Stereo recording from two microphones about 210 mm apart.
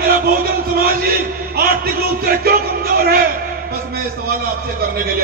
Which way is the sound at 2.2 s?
45° right (ahead or behind).